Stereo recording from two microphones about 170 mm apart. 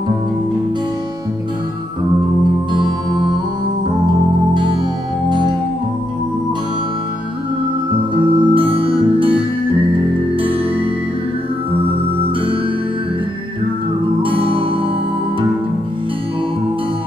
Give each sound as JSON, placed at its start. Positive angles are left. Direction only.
{"t": 2.7, "sound": "music", "side_deg": -25}
{"t": 8.1, "sound": "music", "side_deg": -30}
{"t": 14.2, "sound": "music", "side_deg": -30}